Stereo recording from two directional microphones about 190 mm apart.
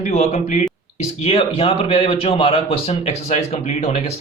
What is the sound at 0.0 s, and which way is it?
A man's voice, 35° left (ahead or behind).